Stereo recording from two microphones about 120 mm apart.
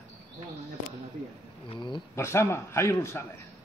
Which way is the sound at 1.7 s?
40° left (ahead or behind).